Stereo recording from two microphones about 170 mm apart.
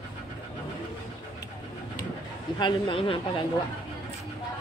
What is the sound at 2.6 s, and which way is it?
Speech, 30° left (ahead or behind).